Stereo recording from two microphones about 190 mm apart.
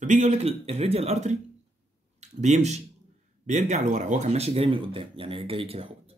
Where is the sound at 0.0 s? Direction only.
40° right (ahead or behind).